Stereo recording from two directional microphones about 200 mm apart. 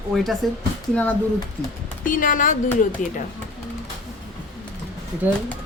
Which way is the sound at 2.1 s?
45° left (ahead or behind).